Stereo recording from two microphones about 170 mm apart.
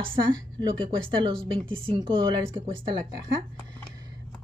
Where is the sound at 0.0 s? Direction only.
30° right (ahead or behind).